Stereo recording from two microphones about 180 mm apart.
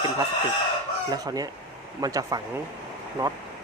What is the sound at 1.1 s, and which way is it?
Speech, 20° right (ahead or behind).